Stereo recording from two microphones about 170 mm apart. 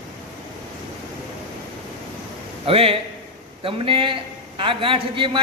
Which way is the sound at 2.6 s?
35° right (ahead or behind).